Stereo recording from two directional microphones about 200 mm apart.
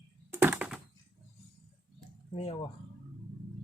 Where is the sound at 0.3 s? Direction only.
10° right (ahead or behind).